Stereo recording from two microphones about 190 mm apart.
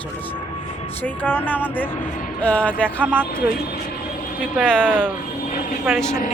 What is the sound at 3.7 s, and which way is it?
Speech, 55° left (ahead or behind).